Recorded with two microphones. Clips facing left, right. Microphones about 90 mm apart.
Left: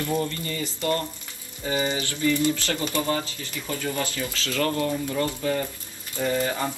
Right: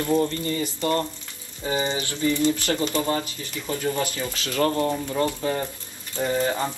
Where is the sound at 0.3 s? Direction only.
30° right (ahead or behind).